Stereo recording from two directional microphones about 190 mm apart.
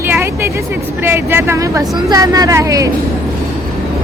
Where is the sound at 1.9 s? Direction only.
20° right (ahead or behind).